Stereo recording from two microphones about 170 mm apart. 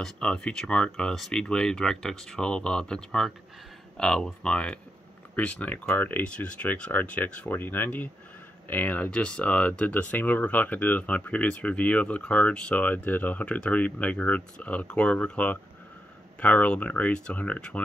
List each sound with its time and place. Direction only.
0.0 s speech: 5° left (ahead or behind)